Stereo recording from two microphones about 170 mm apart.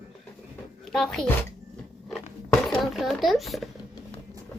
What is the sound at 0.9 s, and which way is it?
Speech, centre (ahead or behind).